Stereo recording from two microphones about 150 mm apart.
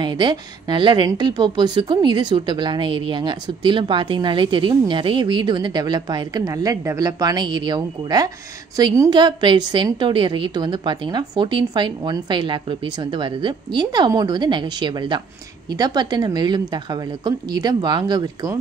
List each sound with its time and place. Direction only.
0.0 s a woman's voice: 30° right (ahead or behind)